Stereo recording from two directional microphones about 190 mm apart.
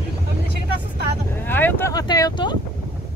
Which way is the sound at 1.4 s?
10° left (ahead or behind).